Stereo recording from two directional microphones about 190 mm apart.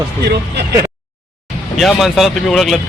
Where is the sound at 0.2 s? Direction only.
55° right (ahead or behind).